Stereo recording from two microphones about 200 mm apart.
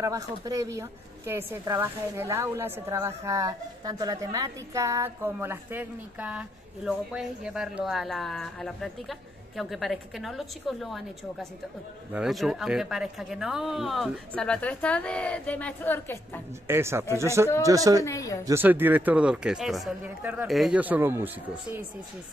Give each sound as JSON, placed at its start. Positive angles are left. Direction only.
{"t": 0.0, "sound": "speech", "side_deg": -15}
{"t": 12.1, "sound": "speech", "side_deg": 0}
{"t": 16.6, "sound": "speech", "side_deg": -10}
{"t": 18.0, "sound": "a woman's voice", "side_deg": 15}
{"t": 18.4, "sound": "speech", "side_deg": -10}